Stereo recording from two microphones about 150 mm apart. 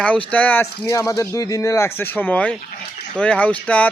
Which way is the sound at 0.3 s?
10° left (ahead or behind).